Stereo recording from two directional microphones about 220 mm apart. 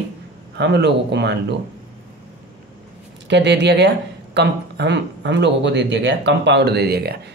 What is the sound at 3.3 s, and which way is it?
Speech, 50° right (ahead or behind).